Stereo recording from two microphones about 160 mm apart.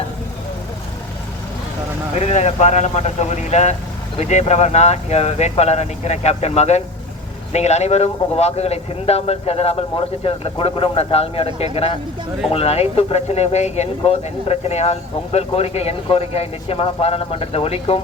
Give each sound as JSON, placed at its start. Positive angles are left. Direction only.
{"t": 2.1, "sound": "speech", "side_deg": 45}